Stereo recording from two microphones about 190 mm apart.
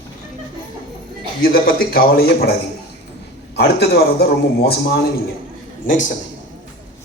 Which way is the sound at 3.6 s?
60° left (ahead or behind).